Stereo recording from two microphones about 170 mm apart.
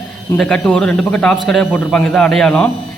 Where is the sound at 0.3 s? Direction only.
5° left (ahead or behind).